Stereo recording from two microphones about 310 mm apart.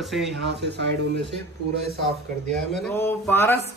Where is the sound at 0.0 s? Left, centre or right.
Centre.